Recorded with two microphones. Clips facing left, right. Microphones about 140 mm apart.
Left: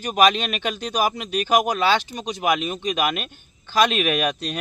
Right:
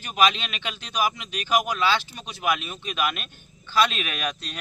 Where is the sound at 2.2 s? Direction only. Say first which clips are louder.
Left 5 dB; 20° left (ahead or behind).